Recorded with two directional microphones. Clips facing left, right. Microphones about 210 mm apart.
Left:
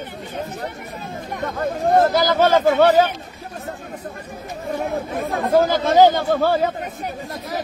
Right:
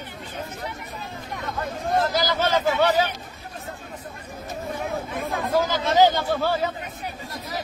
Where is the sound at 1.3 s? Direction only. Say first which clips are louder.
Left 7 dB; 50° left (ahead or behind).